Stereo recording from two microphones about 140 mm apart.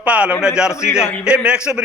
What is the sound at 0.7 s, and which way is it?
Speech, 20° left (ahead or behind).